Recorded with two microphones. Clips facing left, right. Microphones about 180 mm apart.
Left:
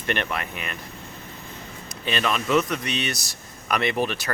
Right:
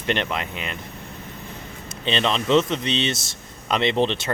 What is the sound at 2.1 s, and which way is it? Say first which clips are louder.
Speech: right 3 dB; 25° right (ahead or behind).